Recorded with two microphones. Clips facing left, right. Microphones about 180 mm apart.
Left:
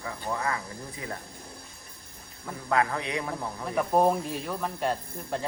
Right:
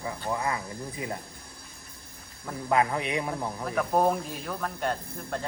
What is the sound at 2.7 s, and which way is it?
Speech, 20° right (ahead or behind).